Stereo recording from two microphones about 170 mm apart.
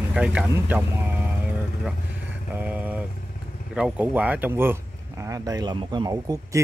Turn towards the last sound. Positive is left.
turn(degrees=-20)  # may be behind; listen again after turning